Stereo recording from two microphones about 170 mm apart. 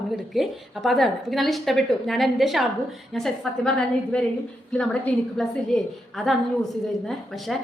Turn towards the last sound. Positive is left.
turn(degrees=0)  # may be behind; listen again after turning